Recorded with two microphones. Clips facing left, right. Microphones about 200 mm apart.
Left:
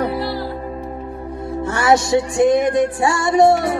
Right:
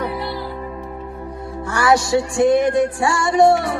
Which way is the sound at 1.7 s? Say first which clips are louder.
Left 1 dB; 20° left (ahead or behind).